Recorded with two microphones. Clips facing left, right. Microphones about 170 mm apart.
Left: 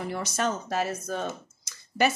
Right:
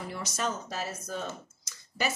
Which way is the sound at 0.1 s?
60° left (ahead or behind).